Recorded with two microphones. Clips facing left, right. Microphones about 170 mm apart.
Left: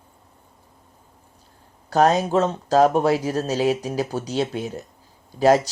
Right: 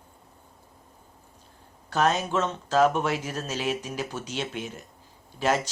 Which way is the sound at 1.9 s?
40° left (ahead or behind).